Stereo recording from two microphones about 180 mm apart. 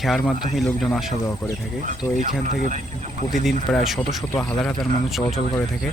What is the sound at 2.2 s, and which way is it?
Speech, 45° right (ahead or behind).